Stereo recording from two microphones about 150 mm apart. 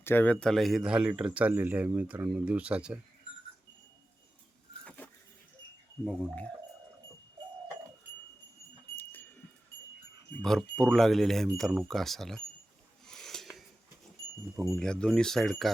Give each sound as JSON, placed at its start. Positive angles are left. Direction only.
{"t": 0.0, "sound": "speech", "side_deg": 15}
{"t": 6.1, "sound": "speech", "side_deg": 10}
{"t": 10.8, "sound": "speech", "side_deg": 0}
{"t": 13.1, "sound": "a sound", "side_deg": 5}
{"t": 14.7, "sound": "speech", "side_deg": 5}